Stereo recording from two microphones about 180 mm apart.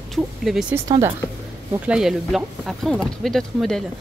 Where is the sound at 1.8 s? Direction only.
5° right (ahead or behind).